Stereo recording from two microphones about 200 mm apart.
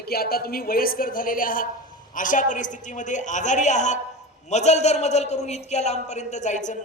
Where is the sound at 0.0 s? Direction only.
50° left (ahead or behind).